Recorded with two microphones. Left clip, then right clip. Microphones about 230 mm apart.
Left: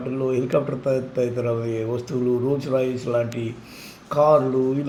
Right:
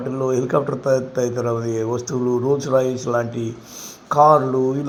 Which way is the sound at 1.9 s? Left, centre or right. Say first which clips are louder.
Right 2 dB; centre.